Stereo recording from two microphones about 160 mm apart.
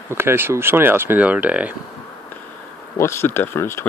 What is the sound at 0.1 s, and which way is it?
Speech, 15° right (ahead or behind).